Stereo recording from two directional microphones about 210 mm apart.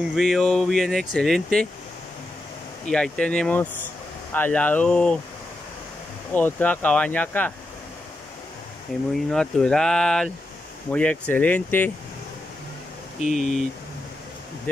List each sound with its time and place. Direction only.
0.1 s speech: centre (ahead or behind)
2.9 s speech: 5° left (ahead or behind)
6.3 s speech: 10° left (ahead or behind)
9.1 s speech: 5° left (ahead or behind)
13.2 s speech: 35° left (ahead or behind)